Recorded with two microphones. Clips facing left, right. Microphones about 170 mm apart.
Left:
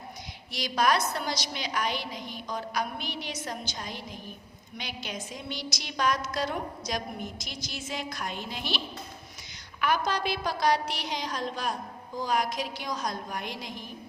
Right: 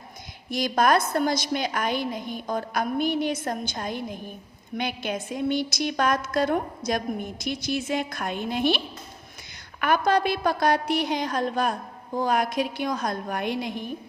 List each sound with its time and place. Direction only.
0.5 s a woman's voice: 50° right (ahead or behind)
9.8 s a woman's voice: 55° right (ahead or behind)